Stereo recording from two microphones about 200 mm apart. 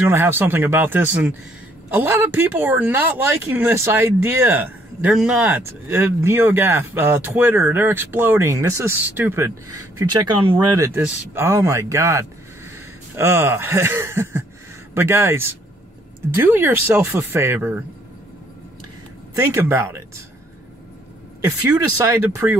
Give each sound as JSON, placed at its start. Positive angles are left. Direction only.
{"t": 0.0, "sound": "speech", "side_deg": -10}
{"t": 10.8, "sound": "speech", "side_deg": -10}
{"t": 19.3, "sound": "speech", "side_deg": -15}
{"t": 21.5, "sound": "speech", "side_deg": -20}